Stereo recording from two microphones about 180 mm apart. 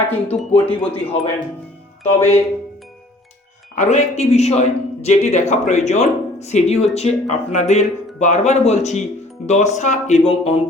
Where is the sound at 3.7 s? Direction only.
40° left (ahead or behind).